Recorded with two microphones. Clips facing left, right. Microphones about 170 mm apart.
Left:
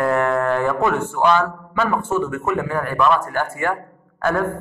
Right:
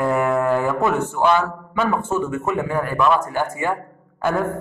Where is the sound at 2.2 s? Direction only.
25° right (ahead or behind).